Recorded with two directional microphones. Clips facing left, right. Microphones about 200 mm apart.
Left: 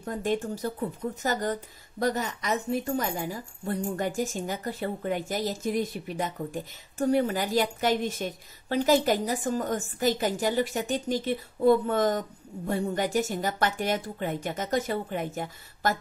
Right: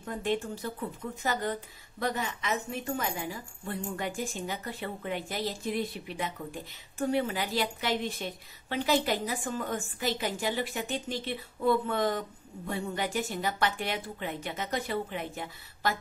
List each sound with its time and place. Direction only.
0.0 s speech: 40° left (ahead or behind)